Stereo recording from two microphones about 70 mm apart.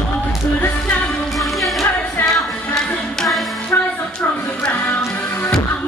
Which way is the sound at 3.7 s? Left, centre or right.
Left.